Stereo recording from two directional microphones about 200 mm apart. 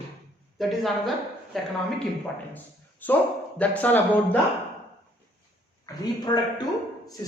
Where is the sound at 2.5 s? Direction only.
10° left (ahead or behind).